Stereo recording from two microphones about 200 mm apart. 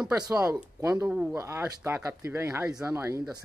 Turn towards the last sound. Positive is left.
turn(degrees=-15)  # may be behind; listen again after turning